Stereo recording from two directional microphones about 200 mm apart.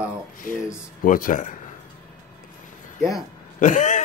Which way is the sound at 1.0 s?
45° left (ahead or behind).